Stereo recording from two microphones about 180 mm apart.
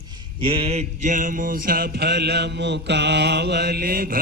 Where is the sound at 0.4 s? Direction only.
30° right (ahead or behind).